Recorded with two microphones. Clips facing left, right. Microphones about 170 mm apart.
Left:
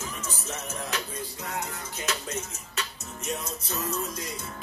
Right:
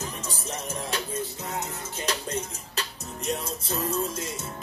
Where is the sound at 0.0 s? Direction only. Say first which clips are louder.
Right 2 dB; 35° right (ahead or behind).